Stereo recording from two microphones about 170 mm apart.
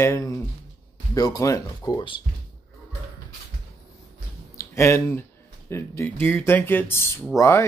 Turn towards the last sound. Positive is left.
turn(degrees=15)  # may be behind; listen again after turning